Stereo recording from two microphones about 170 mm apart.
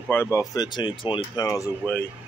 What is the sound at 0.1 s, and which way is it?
Speech, 15° left (ahead or behind).